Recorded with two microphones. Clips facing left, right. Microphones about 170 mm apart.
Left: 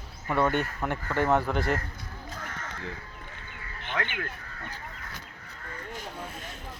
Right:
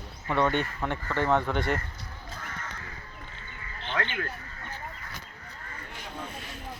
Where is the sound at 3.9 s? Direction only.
15° left (ahead or behind).